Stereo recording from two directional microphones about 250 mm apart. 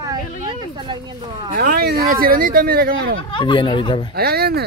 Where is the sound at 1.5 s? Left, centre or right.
Right.